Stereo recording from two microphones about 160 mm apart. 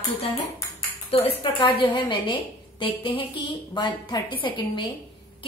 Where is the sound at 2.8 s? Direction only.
35° left (ahead or behind).